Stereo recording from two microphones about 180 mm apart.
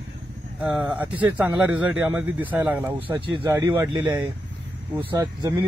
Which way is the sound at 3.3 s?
30° right (ahead or behind).